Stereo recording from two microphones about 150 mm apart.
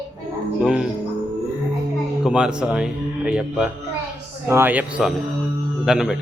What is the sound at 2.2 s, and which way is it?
A man's voice, 5° right (ahead or behind).